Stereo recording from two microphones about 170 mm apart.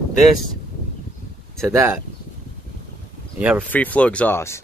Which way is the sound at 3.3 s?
10° right (ahead or behind).